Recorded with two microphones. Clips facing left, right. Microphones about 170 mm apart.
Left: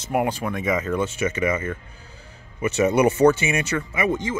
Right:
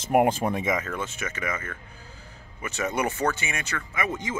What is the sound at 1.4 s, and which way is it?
Speech, 15° left (ahead or behind).